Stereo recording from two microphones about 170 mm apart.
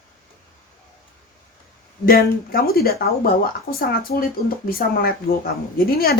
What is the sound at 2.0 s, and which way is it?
Speech, 60° left (ahead or behind).